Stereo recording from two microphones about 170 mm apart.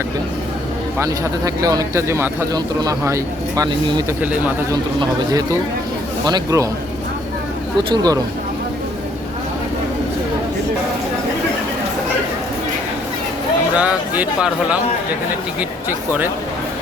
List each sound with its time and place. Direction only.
0.9 s a man's voice: 20° right (ahead or behind)
4.2 s speech: 10° right (ahead or behind)
4.7 s a man's voice: 20° right (ahead or behind)
7.8 s a man's voice: 20° right (ahead or behind)
13.7 s speech: 10° right (ahead or behind)
15.9 s speech: 10° right (ahead or behind)